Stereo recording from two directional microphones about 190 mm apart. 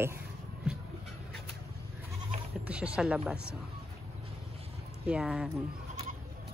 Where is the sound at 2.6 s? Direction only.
5° right (ahead or behind).